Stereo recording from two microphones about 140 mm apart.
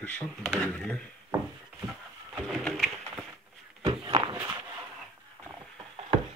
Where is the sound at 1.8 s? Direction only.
5° right (ahead or behind).